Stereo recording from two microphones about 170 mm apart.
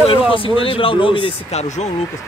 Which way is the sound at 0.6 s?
30° left (ahead or behind).